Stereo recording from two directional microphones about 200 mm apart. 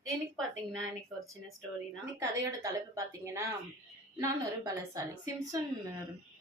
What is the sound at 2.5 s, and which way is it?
A woman's voice, 15° right (ahead or behind).